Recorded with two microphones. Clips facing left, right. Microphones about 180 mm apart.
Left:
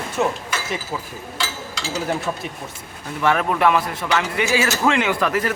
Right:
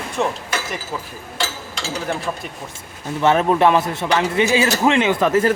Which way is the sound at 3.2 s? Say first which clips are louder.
Right 3 dB; 25° right (ahead or behind).